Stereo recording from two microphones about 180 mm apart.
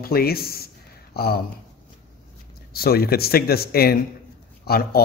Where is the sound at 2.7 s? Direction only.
60° left (ahead or behind).